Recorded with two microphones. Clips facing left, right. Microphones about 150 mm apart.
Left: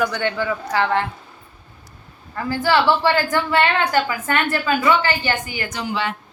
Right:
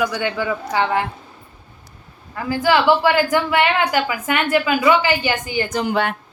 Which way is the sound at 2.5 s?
15° right (ahead or behind).